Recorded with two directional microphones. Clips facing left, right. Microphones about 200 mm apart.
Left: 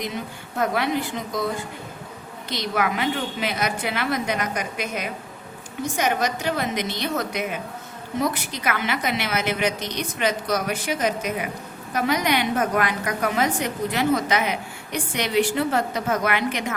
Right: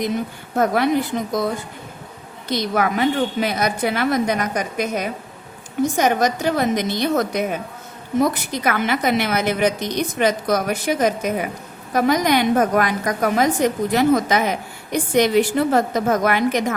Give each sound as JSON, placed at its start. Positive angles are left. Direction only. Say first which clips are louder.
{"t": 0.5, "sound": "a woman's voice", "louder": "right 5 dB", "side_deg": -45}
{"t": 2.5, "sound": "a woman's voice", "louder": "right 4 dB", "side_deg": -40}